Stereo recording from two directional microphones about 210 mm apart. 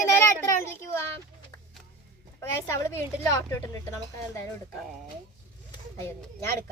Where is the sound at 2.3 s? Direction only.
15° left (ahead or behind).